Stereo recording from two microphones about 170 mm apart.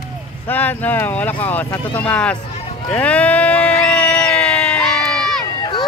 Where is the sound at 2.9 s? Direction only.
10° left (ahead or behind).